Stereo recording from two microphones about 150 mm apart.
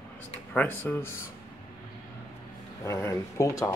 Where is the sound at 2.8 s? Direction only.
20° left (ahead or behind).